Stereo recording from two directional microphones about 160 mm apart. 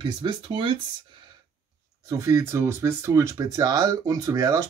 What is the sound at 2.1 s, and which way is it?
Speech, 20° right (ahead or behind).